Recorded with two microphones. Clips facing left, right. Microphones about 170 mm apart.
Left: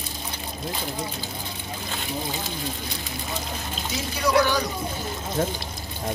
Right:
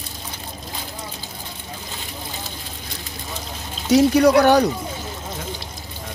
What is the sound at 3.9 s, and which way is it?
Speech, 65° right (ahead or behind).